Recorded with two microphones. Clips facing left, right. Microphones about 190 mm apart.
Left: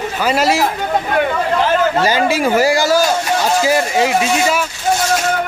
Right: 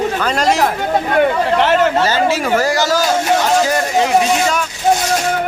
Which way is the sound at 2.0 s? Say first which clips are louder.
Left 1 dB; 15° left (ahead or behind).